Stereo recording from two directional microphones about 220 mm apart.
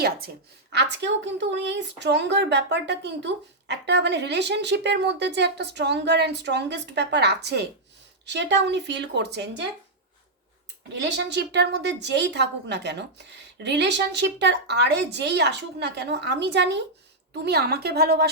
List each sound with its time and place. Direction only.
0.7 s speech: 50° right (ahead or behind)
11.2 s speech: 50° right (ahead or behind)